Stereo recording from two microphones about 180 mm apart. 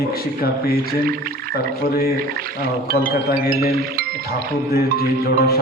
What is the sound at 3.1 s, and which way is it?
Speech, 60° left (ahead or behind).